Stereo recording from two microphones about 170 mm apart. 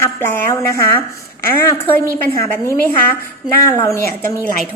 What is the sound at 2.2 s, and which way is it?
A woman's voice, 15° left (ahead or behind).